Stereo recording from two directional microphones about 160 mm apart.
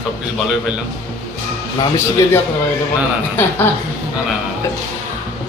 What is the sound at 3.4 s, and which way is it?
Speech, 10° left (ahead or behind).